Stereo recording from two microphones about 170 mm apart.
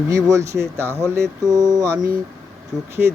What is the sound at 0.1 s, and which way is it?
Speech, 20° right (ahead or behind).